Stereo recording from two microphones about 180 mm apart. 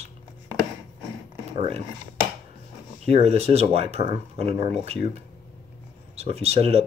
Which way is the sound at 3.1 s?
35° right (ahead or behind).